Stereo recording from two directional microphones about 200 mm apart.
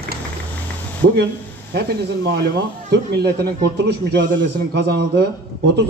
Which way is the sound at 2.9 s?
55° right (ahead or behind).